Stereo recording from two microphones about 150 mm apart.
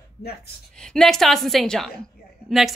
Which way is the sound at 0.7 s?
5° left (ahead or behind).